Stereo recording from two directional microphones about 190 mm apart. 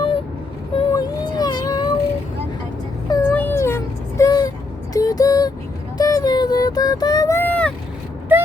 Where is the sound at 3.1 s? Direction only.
15° left (ahead or behind).